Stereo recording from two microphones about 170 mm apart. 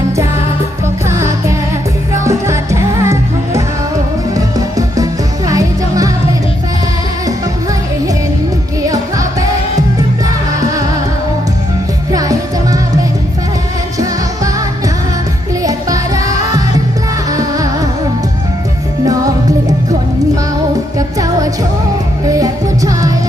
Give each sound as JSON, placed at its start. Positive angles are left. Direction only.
{"t": 1.0, "sound": "music", "side_deg": -15}
{"t": 10.2, "sound": "music", "side_deg": -20}
{"t": 12.1, "sound": "music", "side_deg": -20}
{"t": 15.6, "sound": "music", "side_deg": -20}
{"t": 19.0, "sound": "music", "side_deg": -20}
{"t": 22.3, "sound": "music", "side_deg": -20}